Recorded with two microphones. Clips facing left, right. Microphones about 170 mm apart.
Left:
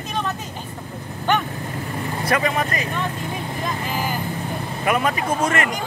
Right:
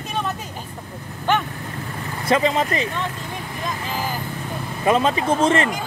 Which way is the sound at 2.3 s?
25° right (ahead or behind).